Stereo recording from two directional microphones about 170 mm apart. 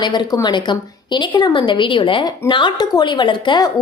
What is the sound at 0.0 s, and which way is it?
Speech, 25° left (ahead or behind).